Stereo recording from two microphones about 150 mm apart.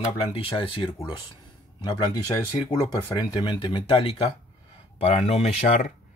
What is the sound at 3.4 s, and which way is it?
Speech, 35° left (ahead or behind).